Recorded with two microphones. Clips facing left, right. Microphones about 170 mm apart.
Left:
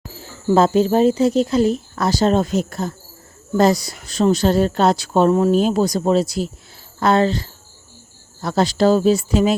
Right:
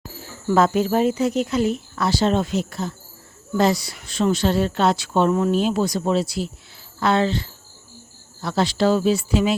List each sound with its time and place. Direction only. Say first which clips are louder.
0.4 s speech: left 4 dB; 30° left (ahead or behind)